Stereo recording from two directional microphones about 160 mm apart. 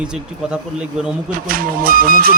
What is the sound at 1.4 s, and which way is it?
Speech, 65° right (ahead or behind).